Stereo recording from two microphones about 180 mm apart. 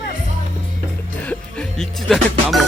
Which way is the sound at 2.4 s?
Centre (ahead or behind).